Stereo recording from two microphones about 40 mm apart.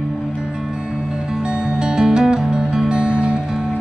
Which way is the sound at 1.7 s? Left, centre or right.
Right.